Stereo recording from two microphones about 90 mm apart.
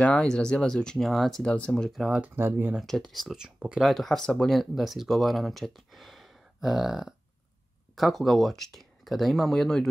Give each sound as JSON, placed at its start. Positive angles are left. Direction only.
{"t": 0.0, "sound": "speech", "side_deg": 10}
{"t": 1.9, "sound": "speech", "side_deg": -5}
{"t": 2.2, "sound": "speech", "side_deg": -25}
{"t": 2.7, "sound": "speech", "side_deg": -5}
{"t": 3.9, "sound": "speech", "side_deg": 5}